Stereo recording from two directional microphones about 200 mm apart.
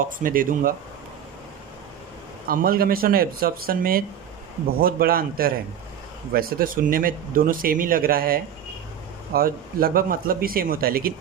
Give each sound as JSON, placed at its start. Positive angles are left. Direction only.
{"t": 0.0, "sound": "speech", "side_deg": -45}
{"t": 2.5, "sound": "speech", "side_deg": -45}